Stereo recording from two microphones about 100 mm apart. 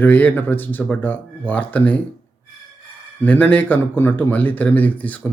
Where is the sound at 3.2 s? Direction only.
15° left (ahead or behind).